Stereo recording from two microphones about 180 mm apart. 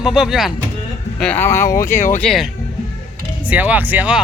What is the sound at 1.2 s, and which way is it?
Speech, 10° left (ahead or behind).